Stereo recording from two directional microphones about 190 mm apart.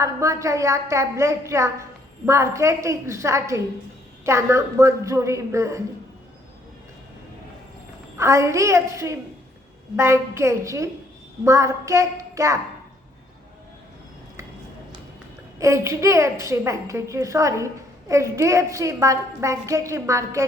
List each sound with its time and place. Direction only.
0.0 s a woman's voice: 15° right (ahead or behind)
8.2 s a woman's voice: 15° right (ahead or behind)
15.5 s a woman's voice: 15° right (ahead or behind)